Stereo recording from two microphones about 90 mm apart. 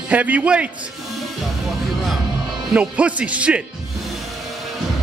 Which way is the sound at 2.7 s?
15° right (ahead or behind).